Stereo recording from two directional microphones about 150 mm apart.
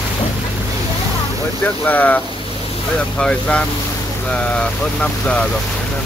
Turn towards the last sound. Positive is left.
turn(degrees=5)  # may be behind; listen again after turning